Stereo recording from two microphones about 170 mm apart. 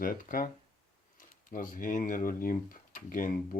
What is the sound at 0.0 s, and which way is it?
Speech, 55° left (ahead or behind).